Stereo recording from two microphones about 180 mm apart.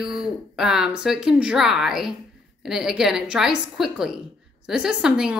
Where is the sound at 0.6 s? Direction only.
5° right (ahead or behind).